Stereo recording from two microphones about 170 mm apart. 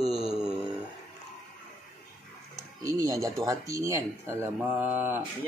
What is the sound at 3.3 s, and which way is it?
Speech, 20° right (ahead or behind).